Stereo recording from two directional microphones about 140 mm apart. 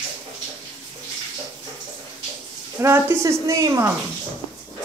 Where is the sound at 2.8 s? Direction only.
20° right (ahead or behind).